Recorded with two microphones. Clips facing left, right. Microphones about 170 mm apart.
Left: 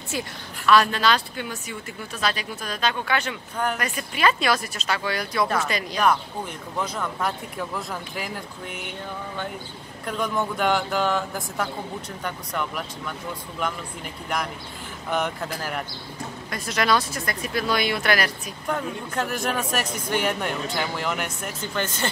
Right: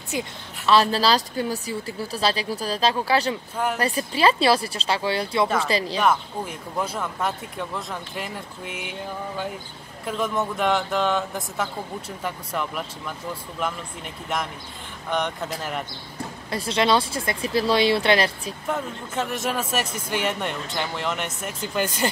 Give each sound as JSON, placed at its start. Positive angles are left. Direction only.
{"t": 0.1, "sound": "speech", "side_deg": -25}
{"t": 5.9, "sound": "speech", "side_deg": -5}
{"t": 10.0, "sound": "speech", "side_deg": -5}
{"t": 15.0, "sound": "speech", "side_deg": 5}
{"t": 16.4, "sound": "speech", "side_deg": -30}
{"t": 18.7, "sound": "speech", "side_deg": 0}
{"t": 21.7, "sound": "speech", "side_deg": -15}